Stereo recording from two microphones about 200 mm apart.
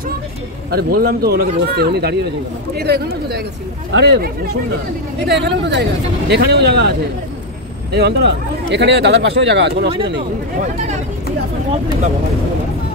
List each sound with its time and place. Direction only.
0.7 s a man's voice: 50° right (ahead or behind)
5.2 s speech: 60° right (ahead or behind)
7.9 s speech: 55° right (ahead or behind)